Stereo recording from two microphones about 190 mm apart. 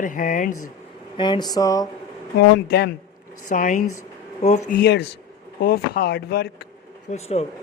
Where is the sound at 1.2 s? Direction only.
25° left (ahead or behind).